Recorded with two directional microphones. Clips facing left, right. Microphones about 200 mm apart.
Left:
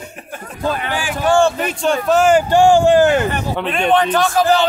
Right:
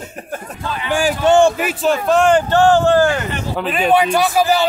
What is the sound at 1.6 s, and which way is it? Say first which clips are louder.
A man's voice: right 1 dB; centre (ahead or behind).